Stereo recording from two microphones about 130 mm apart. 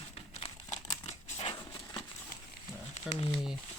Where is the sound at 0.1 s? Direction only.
55° left (ahead or behind).